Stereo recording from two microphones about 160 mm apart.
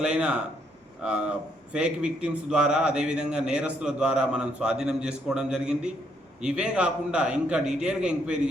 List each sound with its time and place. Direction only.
0.0 s a man's voice: 5° right (ahead or behind)